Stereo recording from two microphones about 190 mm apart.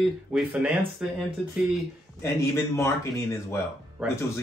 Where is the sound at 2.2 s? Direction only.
15° left (ahead or behind).